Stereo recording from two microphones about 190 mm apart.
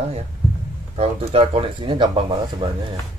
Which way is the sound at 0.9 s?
30° right (ahead or behind).